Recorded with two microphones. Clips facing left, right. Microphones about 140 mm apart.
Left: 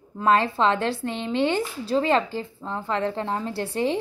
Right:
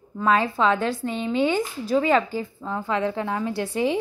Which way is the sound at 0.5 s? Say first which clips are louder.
Right 1 dB; 30° left (ahead or behind).